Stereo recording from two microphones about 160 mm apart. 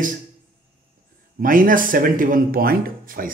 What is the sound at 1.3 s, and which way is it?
Speech, 60° right (ahead or behind).